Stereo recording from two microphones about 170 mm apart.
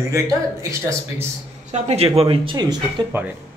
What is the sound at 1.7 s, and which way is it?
Speech, 40° right (ahead or behind).